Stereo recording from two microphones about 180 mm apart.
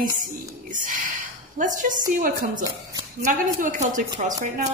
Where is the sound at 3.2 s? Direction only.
45° right (ahead or behind).